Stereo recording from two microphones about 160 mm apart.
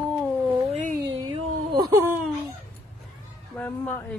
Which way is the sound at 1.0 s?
25° right (ahead or behind).